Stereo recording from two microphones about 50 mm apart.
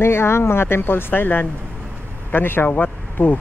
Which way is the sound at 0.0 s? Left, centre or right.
Left.